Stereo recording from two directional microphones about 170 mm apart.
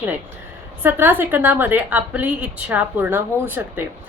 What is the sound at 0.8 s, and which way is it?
A woman's voice, 10° right (ahead or behind).